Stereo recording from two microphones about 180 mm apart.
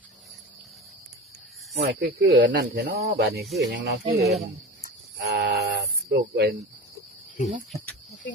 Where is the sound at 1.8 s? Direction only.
65° right (ahead or behind).